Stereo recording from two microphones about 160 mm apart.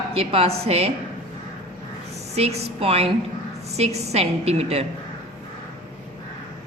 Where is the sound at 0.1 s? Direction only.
35° right (ahead or behind).